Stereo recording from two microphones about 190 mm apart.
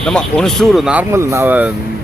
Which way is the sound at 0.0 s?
5° left (ahead or behind).